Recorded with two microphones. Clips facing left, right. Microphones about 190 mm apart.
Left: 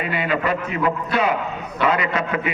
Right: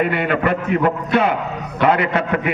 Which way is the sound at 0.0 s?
60° right (ahead or behind).